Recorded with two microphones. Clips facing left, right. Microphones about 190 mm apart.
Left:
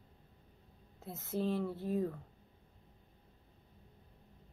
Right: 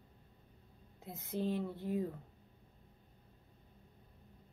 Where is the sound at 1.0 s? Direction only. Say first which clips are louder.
Left 2 dB; 15° right (ahead or behind).